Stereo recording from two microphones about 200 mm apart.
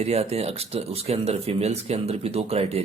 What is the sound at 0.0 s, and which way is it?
Speech, 30° right (ahead or behind).